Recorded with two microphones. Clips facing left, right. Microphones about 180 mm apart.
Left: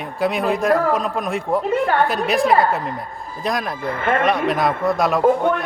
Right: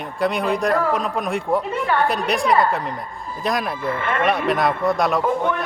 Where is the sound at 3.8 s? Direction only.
45° left (ahead or behind).